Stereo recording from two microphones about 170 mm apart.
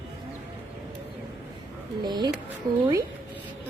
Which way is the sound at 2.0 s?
25° right (ahead or behind).